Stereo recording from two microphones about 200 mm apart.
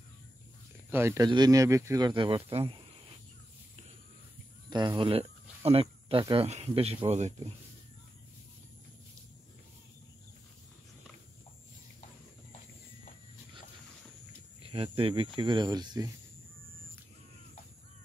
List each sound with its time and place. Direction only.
0.8 s speech: 10° right (ahead or behind); by 2.7 s 30° right (ahead or behind)
4.6 s speech: 20° right (ahead or behind)
14.7 s speech: 25° right (ahead or behind)